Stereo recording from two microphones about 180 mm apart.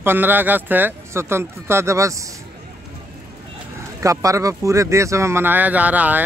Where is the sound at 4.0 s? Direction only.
20° right (ahead or behind).